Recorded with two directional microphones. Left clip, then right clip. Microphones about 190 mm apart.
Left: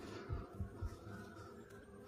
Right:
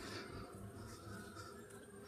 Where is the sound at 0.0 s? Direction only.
20° left (ahead or behind).